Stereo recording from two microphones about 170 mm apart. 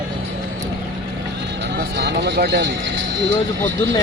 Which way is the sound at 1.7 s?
90° right.